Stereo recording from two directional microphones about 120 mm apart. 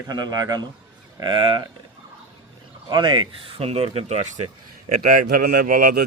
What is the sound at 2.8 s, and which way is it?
Speech, 40° right (ahead or behind).